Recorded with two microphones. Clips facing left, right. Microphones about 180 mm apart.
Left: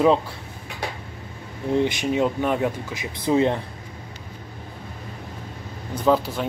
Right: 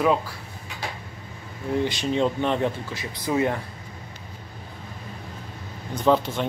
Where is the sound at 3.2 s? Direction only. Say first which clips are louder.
Left 4 dB; 25° left (ahead or behind).